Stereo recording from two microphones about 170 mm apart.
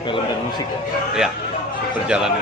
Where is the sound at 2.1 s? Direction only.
5° right (ahead or behind).